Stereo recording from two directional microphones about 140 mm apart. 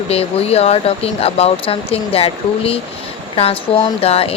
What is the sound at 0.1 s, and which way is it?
Speech, 45° left (ahead or behind).